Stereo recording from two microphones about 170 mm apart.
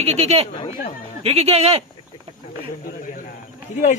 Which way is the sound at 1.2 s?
35° right (ahead or behind).